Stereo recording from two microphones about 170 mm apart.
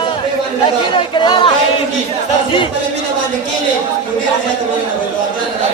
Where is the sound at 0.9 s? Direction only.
30° left (ahead or behind).